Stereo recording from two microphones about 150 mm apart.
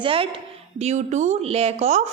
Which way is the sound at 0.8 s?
50° right (ahead or behind).